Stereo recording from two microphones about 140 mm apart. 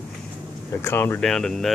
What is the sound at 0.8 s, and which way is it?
Speech, 15° left (ahead or behind).